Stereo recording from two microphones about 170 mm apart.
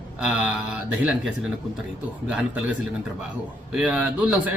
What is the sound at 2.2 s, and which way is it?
Speech, 10° right (ahead or behind).